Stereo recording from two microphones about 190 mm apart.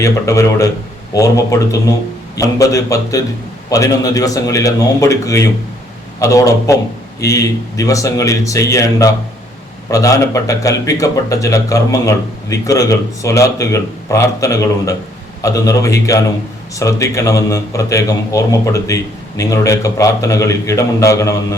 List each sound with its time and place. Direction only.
0.0 s speech: 15° left (ahead or behind)